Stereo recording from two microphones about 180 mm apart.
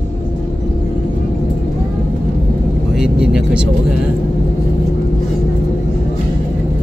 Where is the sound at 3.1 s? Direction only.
5° right (ahead or behind).